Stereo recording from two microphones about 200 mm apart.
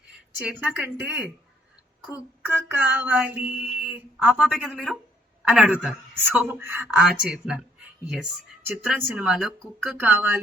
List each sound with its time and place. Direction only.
0.3 s speech: 5° right (ahead or behind)
2.0 s mantra: 10° right (ahead or behind)
5.5 s speech: 5° right (ahead or behind)
6.3 s mantra: 10° right (ahead or behind)
8.1 s speech: 5° right (ahead or behind)